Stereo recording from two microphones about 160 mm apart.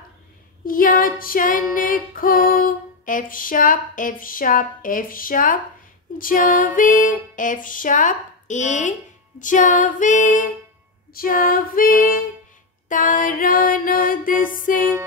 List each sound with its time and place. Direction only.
0.7 s female singing: 60° left (ahead or behind)